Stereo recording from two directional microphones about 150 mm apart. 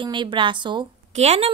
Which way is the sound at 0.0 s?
30° right (ahead or behind).